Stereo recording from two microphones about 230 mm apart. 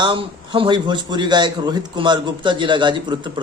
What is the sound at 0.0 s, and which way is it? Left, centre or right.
A man's voice, right.